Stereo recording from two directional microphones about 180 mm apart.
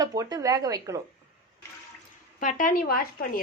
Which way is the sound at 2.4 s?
50° left (ahead or behind).